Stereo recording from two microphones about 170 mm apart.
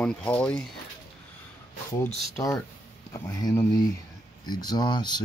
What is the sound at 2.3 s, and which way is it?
Speech, 20° left (ahead or behind).